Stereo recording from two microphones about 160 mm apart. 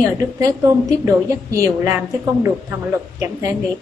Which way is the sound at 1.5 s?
20° right (ahead or behind).